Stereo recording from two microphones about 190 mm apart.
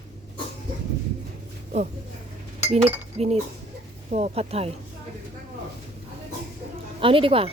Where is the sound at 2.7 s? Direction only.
35° right (ahead or behind).